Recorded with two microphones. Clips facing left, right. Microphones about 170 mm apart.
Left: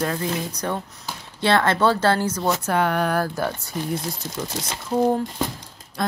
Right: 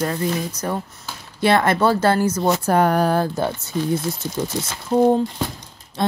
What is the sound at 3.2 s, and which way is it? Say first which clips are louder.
Speech: right 3 dB; 25° right (ahead or behind).